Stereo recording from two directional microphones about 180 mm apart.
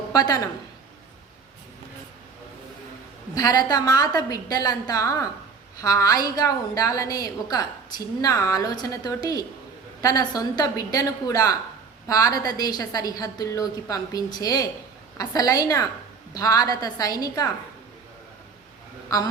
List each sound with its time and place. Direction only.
0.1 s a woman's voice: 20° left (ahead or behind)
3.3 s a woman's voice: 20° left (ahead or behind)